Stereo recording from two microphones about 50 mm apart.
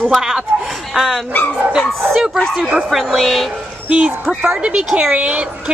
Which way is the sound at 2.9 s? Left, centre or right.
Centre.